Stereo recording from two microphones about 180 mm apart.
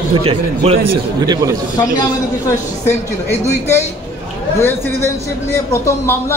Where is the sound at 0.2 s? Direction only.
30° right (ahead or behind).